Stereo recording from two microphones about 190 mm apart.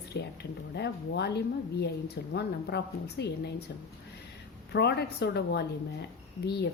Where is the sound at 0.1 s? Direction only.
55° left (ahead or behind).